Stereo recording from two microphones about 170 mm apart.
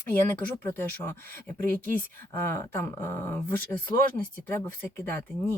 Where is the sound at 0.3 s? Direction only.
10° left (ahead or behind).